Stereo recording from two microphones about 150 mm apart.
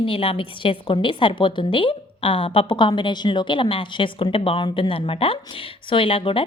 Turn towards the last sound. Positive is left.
turn(degrees=35)  # may be behind; listen again after turning